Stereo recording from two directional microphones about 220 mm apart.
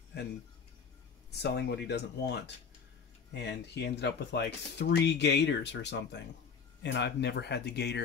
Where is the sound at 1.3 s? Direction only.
50° left (ahead or behind).